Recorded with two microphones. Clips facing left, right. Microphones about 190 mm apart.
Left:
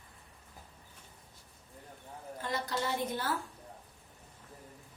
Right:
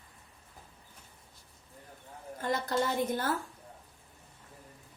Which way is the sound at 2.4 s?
50° right (ahead or behind).